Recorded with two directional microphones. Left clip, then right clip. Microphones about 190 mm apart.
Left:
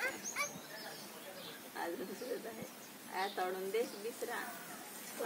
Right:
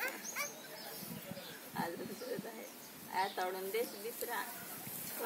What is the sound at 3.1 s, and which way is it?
Speech, 45° left (ahead or behind).